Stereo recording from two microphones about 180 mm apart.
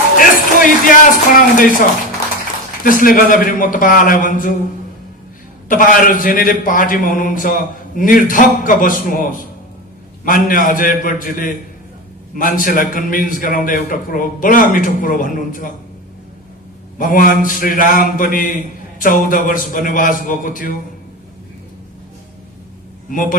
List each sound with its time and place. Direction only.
0.2 s a man's voice: 50° left (ahead or behind)
2.8 s a man's voice: 50° left (ahead or behind)
5.6 s a man's voice: 50° left (ahead or behind)
17.0 s a man's voice: 50° left (ahead or behind)